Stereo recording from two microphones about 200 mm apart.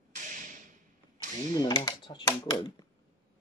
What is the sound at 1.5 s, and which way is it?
Speech, 20° left (ahead or behind).